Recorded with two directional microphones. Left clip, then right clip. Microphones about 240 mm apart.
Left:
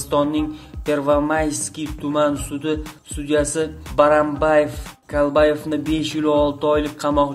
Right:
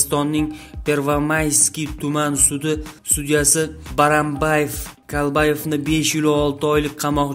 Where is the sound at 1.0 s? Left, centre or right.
Right.